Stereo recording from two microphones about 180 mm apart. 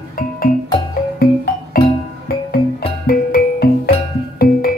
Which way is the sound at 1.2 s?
60° left (ahead or behind).